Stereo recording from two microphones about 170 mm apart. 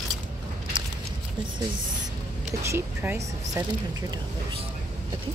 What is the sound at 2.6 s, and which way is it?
Speech, 15° right (ahead or behind).